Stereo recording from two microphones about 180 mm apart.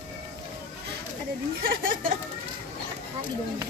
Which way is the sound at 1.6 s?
55° right (ahead or behind).